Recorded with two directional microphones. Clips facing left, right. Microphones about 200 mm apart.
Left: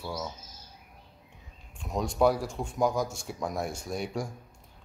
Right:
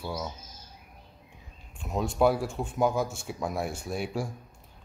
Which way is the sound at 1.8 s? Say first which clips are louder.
Even; 5° right (ahead or behind).